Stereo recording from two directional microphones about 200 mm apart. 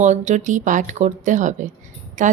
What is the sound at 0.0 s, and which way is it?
Speech, 35° right (ahead or behind).